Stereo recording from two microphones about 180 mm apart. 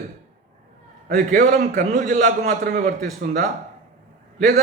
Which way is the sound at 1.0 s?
45° right (ahead or behind).